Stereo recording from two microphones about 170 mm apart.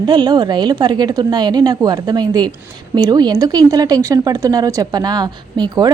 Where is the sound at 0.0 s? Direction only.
25° right (ahead or behind).